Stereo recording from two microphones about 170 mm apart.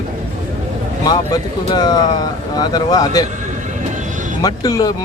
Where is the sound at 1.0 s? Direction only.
25° left (ahead or behind).